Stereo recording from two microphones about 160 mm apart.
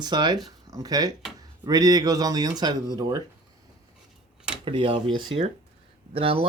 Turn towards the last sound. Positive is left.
turn(degrees=-35)  # may be behind; listen again after turning